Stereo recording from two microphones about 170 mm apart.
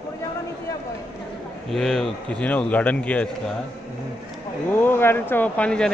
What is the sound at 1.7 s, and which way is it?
Speech, centre (ahead or behind).